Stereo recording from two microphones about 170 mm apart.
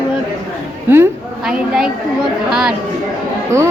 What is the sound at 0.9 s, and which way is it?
A woman's voice, 15° right (ahead or behind).